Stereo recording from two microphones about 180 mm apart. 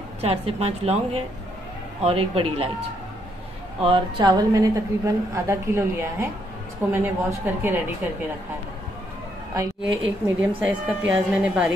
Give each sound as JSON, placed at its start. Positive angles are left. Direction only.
{"t": 0.2, "sound": "a woman's voice", "side_deg": -35}
{"t": 3.8, "sound": "a woman's voice", "side_deg": -25}
{"t": 9.5, "sound": "a woman's voice", "side_deg": -20}
{"t": 10.6, "sound": "a woman's voice", "side_deg": -5}